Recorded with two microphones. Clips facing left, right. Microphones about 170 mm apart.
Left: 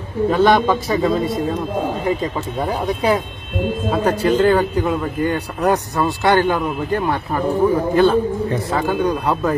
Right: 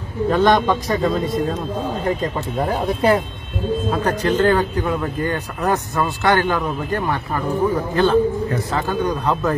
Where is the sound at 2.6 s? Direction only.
Centre (ahead or behind).